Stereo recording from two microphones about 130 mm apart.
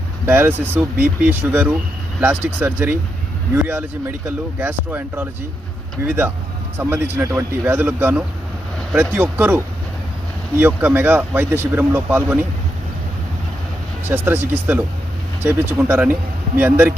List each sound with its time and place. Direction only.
0.3 s speech: 15° right (ahead or behind)
14.1 s speech: 15° right (ahead or behind)